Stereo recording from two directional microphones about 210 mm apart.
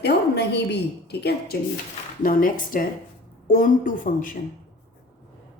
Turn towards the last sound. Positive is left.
turn(degrees=40)  # may be behind; listen again after turning